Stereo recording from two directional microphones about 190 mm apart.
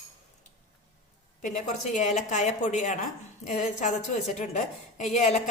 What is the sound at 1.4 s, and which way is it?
A woman's voice, 40° left (ahead or behind).